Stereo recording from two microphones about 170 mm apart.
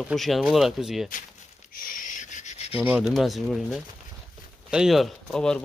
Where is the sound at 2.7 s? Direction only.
10° right (ahead or behind).